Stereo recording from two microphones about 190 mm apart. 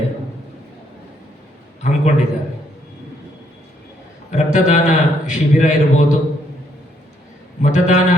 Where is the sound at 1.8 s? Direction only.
40° left (ahead or behind).